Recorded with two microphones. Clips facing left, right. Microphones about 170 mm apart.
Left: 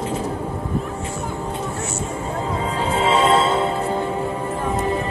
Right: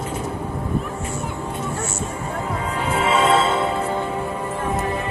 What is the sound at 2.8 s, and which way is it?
Music, 30° left (ahead or behind).